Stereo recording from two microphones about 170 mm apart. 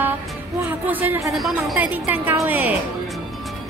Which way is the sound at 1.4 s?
Centre (ahead or behind).